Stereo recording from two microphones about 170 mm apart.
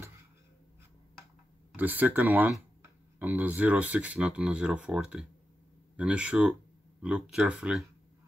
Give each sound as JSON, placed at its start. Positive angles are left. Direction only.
{"t": 1.7, "sound": "speech", "side_deg": -10}